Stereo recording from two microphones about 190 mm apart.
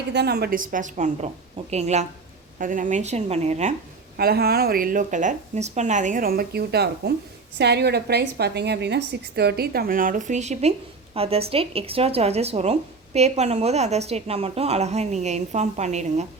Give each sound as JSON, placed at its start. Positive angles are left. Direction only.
{"t": 0.1, "sound": "a woman's voice", "side_deg": -60}
{"t": 4.2, "sound": "a woman's voice", "side_deg": -55}